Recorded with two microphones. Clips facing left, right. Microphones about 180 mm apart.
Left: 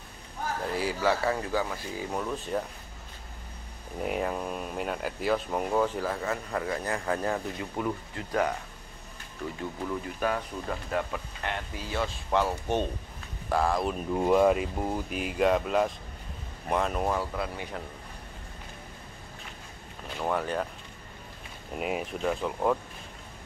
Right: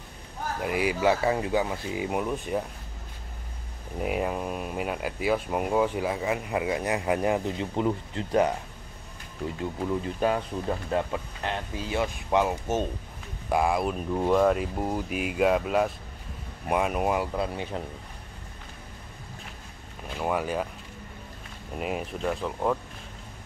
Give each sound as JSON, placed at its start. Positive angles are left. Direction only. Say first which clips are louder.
{"t": 0.6, "sound": "speech", "louder": "right 5 dB", "side_deg": -15}
{"t": 4.0, "sound": "speech", "louder": "right 2 dB", "side_deg": -5}
{"t": 9.6, "sound": "speech", "louder": "right 5 dB", "side_deg": -20}
{"t": 17.4, "sound": "speech", "louder": "right 4 dB", "side_deg": -25}
{"t": 20.2, "sound": "speech", "louder": "right 1 dB", "side_deg": -10}
{"t": 21.7, "sound": "speech", "louder": "even", "side_deg": 0}